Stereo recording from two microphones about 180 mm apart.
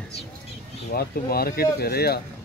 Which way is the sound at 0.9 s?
55° left (ahead or behind).